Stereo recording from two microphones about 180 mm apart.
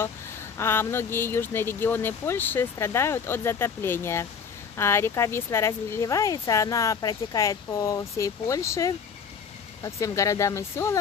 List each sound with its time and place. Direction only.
0.6 s speech: 15° left (ahead or behind)